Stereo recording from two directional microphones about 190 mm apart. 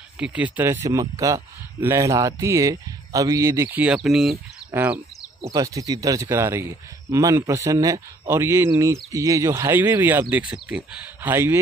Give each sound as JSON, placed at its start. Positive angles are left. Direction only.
{"t": 0.2, "sound": "speech", "side_deg": -5}